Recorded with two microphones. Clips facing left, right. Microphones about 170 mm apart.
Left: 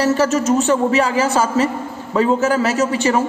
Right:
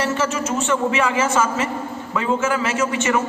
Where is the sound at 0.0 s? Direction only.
35° left (ahead or behind).